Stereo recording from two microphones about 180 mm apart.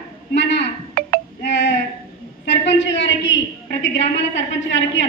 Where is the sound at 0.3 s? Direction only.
80° left.